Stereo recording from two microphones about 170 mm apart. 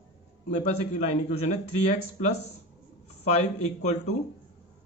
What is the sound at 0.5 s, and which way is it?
Speech, 40° left (ahead or behind).